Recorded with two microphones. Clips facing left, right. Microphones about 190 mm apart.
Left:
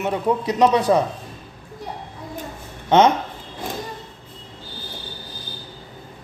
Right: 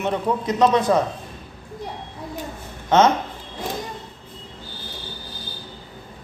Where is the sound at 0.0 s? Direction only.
10° left (ahead or behind).